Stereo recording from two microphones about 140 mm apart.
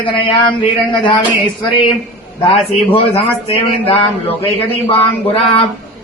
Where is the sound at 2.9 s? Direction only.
40° left (ahead or behind).